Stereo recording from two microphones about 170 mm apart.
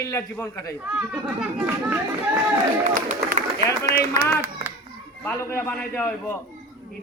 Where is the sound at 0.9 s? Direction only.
5° right (ahead or behind).